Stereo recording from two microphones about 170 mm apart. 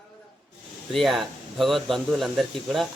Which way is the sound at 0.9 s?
Centre (ahead or behind).